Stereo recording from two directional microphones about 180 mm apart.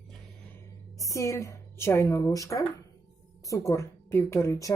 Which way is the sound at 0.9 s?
15° left (ahead or behind).